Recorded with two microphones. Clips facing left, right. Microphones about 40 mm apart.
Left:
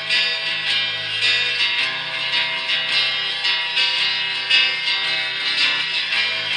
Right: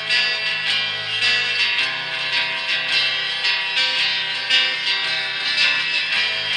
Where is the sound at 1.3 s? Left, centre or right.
Left.